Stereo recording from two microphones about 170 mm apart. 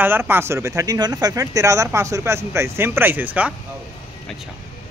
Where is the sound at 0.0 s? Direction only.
10° right (ahead or behind).